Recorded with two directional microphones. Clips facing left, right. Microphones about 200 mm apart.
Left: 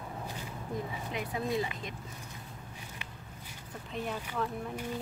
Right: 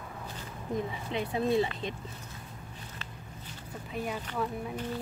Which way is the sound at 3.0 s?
15° left (ahead or behind).